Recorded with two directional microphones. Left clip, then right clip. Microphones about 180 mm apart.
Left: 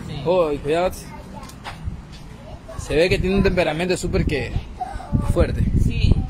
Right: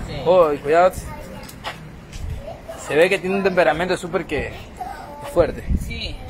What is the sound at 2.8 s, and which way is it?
Speech, 30° left (ahead or behind).